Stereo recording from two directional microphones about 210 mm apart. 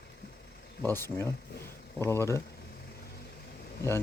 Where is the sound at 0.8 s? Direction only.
10° left (ahead or behind).